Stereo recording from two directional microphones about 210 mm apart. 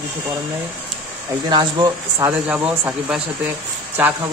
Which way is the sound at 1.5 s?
20° right (ahead or behind).